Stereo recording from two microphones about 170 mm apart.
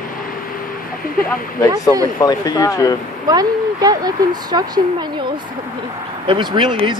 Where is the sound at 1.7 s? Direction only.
20° right (ahead or behind).